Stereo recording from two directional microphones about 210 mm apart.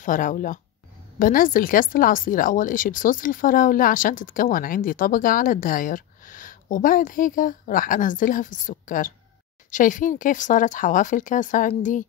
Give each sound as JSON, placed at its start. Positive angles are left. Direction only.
{"t": 0.0, "sound": "speech", "side_deg": 40}